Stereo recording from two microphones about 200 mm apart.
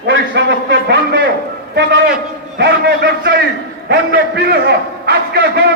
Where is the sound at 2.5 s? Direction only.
60° right (ahead or behind).